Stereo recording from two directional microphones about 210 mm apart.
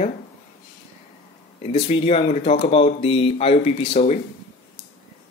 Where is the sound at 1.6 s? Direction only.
30° left (ahead or behind).